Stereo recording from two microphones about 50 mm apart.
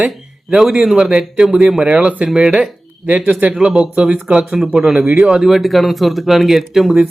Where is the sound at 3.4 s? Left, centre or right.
Right.